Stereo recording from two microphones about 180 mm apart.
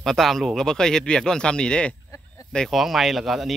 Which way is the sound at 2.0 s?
15° left (ahead or behind).